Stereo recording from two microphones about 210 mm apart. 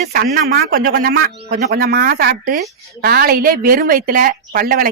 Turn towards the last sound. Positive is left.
turn(degrees=-45)  # may be behind; listen again after turning